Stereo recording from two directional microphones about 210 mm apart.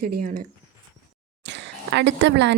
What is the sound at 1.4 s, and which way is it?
Speech, 55° right (ahead or behind).